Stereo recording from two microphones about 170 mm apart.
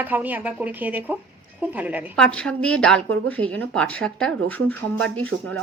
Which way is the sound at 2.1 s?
5° left (ahead or behind).